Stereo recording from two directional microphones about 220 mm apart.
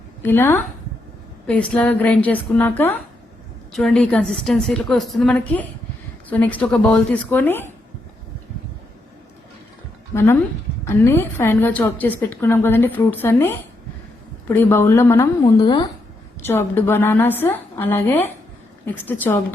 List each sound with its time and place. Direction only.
0.2 s a woman's voice: 10° left (ahead or behind)
10.1 s a woman's voice: 15° left (ahead or behind)